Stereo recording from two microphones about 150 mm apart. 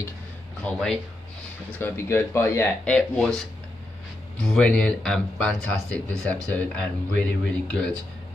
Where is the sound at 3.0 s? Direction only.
5° left (ahead or behind).